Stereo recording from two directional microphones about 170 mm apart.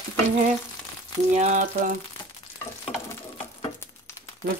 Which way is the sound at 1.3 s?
45° right (ahead or behind).